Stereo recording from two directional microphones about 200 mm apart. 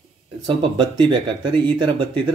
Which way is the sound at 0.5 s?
25° right (ahead or behind).